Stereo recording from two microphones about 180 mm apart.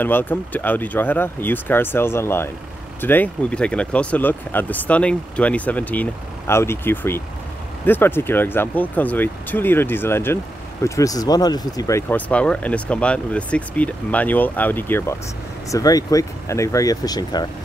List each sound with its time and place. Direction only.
0.0 s speech: 10° left (ahead or behind)